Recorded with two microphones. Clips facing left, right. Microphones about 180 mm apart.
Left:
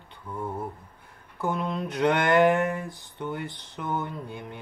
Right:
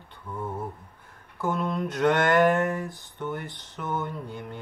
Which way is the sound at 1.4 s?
15° left (ahead or behind).